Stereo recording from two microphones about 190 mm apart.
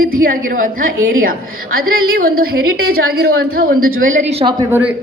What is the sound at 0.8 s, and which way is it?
Speech, 90° right.